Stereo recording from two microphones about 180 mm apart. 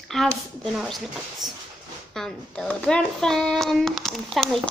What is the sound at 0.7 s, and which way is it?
A woman's voice, centre (ahead or behind).